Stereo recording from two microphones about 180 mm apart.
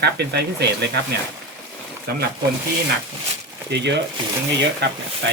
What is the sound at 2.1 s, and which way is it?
Speech, 60° right (ahead or behind).